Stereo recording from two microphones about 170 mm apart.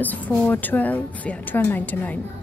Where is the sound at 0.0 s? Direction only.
10° left (ahead or behind).